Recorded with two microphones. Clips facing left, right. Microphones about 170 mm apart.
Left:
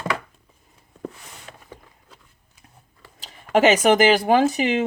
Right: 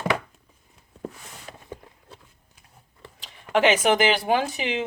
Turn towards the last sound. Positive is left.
turn(degrees=45)  # may be behind; listen again after turning